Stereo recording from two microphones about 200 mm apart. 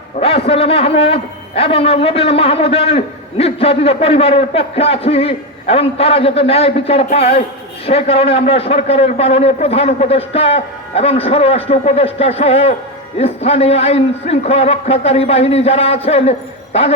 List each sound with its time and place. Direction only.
0.2 s a man's voice: 30° left (ahead or behind)